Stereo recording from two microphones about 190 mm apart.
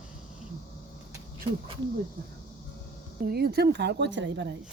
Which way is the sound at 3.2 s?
55° right (ahead or behind).